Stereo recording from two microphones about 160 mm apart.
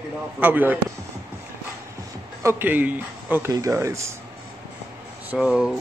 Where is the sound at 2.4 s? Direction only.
10° right (ahead or behind).